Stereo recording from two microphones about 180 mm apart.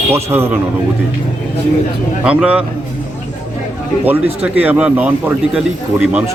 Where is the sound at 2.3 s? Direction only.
5° right (ahead or behind).